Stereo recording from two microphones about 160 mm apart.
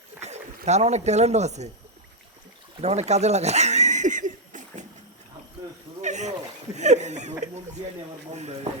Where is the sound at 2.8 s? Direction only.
40° right (ahead or behind).